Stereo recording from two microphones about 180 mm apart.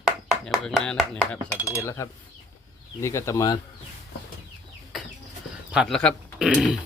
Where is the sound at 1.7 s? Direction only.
15° left (ahead or behind).